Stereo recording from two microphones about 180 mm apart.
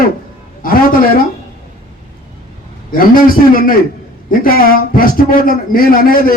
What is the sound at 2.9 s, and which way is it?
Speech, 55° left (ahead or behind).